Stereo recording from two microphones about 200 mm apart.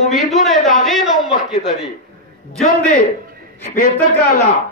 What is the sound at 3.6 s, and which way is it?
Speech, 40° left (ahead or behind).